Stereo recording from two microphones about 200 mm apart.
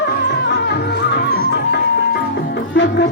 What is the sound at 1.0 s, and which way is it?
Music, 60° left (ahead or behind).